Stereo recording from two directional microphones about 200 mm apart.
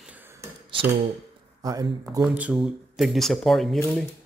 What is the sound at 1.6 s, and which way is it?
Speech, 15° right (ahead or behind).